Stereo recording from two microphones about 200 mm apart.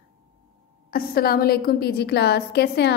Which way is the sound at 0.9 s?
50° left (ahead or behind).